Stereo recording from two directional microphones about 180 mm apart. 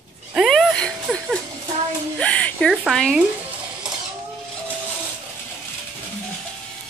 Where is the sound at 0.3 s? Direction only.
Centre (ahead or behind).